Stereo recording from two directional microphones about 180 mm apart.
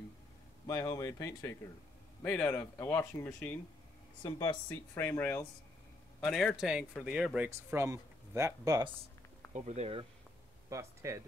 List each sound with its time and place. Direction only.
0.7 s a man's voice: 20° left (ahead or behind)
4.2 s speech: 25° left (ahead or behind)
4.6 s speech: 10° left (ahead or behind)
6.2 s a man's voice: 5° left (ahead or behind); by 8.9 s 20° right (ahead or behind)
9.5 s speech: 40° right (ahead or behind)
10.7 s speech: 15° right (ahead or behind)